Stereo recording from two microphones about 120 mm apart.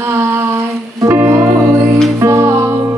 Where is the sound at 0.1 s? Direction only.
20° right (ahead or behind).